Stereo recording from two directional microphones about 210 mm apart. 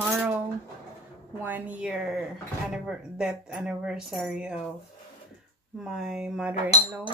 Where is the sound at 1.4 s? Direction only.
10° right (ahead or behind).